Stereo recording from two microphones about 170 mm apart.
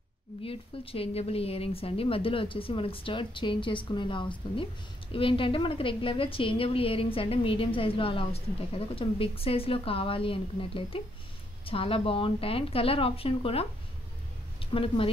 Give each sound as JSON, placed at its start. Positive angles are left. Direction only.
{"t": 0.4, "sound": "a woman's voice", "side_deg": 35}